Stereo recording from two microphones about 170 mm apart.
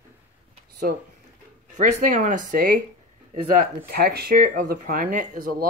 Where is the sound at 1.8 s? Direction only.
45° right (ahead or behind).